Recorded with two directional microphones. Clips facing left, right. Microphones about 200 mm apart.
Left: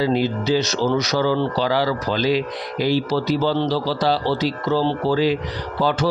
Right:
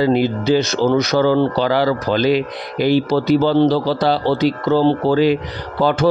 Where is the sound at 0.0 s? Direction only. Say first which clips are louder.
Right 4 dB; 55° right (ahead or behind).